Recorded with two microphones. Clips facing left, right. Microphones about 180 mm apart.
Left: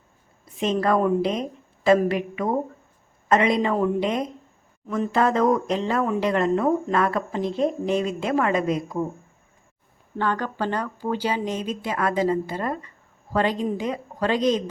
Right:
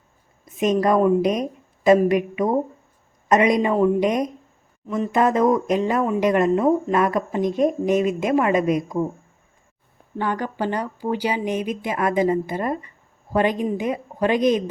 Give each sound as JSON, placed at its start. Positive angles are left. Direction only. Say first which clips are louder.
{"t": 0.4, "sound": "a woman's voice", "louder": "right 3 dB", "side_deg": -15}
{"t": 10.2, "sound": "speech", "louder": "right 1 dB", "side_deg": -15}